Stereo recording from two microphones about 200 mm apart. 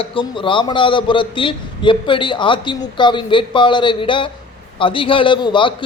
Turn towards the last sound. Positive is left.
turn(degrees=25)  # may be behind; listen again after turning